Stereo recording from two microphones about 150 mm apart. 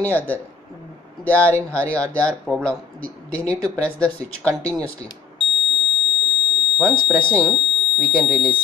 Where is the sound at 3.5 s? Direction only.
15° right (ahead or behind).